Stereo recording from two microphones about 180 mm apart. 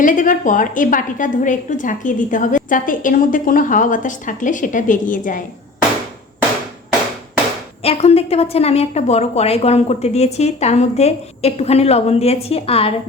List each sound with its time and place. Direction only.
0.0 s a woman's voice: 45° left (ahead or behind)
7.8 s a woman's voice: 35° left (ahead or behind)